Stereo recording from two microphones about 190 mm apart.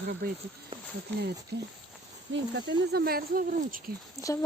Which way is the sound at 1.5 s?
60° right (ahead or behind).